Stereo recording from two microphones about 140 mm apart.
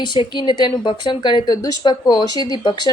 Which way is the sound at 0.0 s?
35° left (ahead or behind).